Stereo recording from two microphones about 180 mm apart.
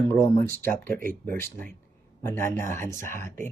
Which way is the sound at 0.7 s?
50° right (ahead or behind).